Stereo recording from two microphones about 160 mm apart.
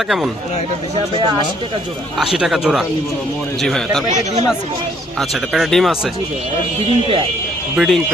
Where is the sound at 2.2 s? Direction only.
5° right (ahead or behind).